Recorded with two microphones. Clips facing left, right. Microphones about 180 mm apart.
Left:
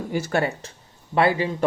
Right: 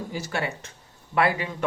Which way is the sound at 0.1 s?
50° left (ahead or behind).